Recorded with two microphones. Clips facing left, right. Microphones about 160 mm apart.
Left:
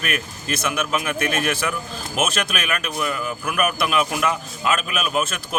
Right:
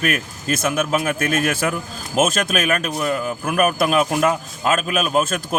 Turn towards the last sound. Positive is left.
turn(degrees=-45)  # may be behind; listen again after turning